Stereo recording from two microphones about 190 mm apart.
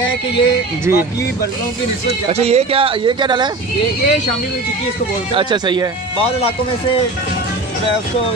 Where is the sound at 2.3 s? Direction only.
35° right (ahead or behind).